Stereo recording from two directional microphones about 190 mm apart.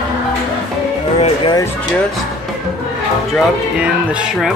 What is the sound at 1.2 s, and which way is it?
Speech, 25° left (ahead or behind).